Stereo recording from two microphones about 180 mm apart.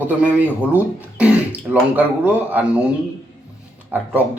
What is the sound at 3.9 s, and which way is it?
Speech, 10° right (ahead or behind).